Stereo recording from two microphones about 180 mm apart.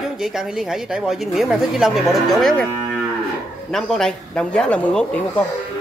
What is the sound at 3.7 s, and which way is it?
Speech, centre (ahead or behind).